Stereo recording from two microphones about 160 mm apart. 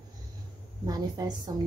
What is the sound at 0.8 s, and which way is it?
Speech, 25° right (ahead or behind).